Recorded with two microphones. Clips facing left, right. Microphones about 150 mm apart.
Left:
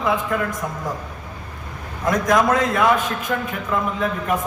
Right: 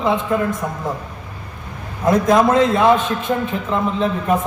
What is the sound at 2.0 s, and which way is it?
A man's voice, 25° right (ahead or behind).